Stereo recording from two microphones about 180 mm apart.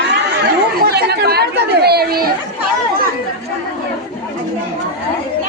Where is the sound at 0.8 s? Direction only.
60° right (ahead or behind).